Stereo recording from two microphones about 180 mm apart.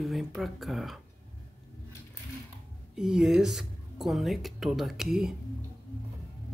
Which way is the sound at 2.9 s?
5° right (ahead or behind).